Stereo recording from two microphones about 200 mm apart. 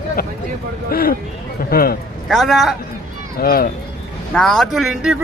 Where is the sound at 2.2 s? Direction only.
Centre (ahead or behind).